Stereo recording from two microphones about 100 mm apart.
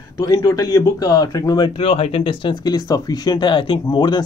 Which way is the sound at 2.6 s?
35° left (ahead or behind).